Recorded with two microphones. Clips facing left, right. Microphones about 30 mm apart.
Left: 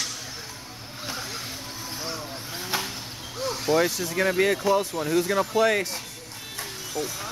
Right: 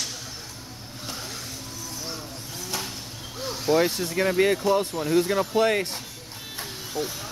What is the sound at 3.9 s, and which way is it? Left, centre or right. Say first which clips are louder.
Speech: right 1 dB; right.